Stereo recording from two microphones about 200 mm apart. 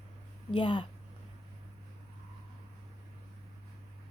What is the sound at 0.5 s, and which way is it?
Speech, 25° left (ahead or behind).